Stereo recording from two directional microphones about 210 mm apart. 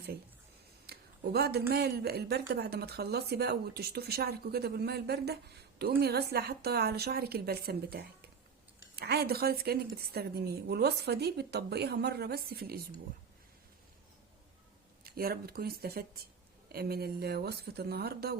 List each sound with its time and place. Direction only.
0.9 s a sound: 50° right (ahead or behind)
1.7 s speech: 50° right (ahead or behind)
15.0 s speech: 45° right (ahead or behind)